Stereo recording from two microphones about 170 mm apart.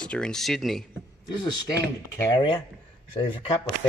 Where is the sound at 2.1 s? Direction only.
25° left (ahead or behind).